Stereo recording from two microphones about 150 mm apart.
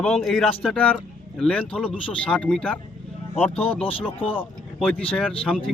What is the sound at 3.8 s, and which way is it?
Speech, 35° left (ahead or behind).